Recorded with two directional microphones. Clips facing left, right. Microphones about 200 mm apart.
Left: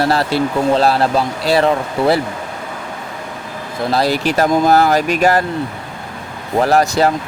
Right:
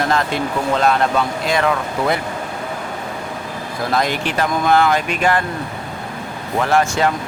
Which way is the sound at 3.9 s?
35° left (ahead or behind).